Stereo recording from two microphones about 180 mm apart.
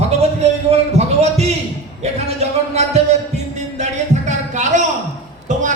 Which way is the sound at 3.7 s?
40° right (ahead or behind).